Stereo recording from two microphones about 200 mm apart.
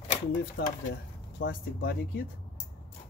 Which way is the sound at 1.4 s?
55° left (ahead or behind).